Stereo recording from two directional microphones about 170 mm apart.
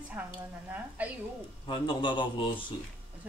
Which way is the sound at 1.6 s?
30° left (ahead or behind).